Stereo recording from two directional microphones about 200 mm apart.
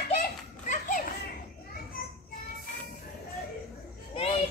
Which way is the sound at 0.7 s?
40° left (ahead or behind).